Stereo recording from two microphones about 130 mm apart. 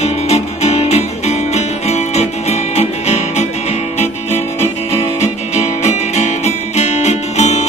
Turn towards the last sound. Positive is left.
turn(degrees=60)  # may be behind; listen again after turning